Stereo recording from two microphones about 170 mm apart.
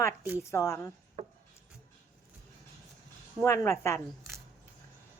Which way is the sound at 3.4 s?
15° left (ahead or behind).